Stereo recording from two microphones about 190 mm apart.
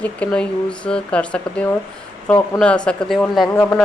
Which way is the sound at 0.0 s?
5° left (ahead or behind).